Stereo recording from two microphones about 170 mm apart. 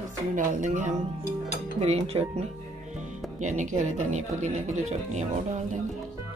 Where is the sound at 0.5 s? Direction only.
50° right (ahead or behind).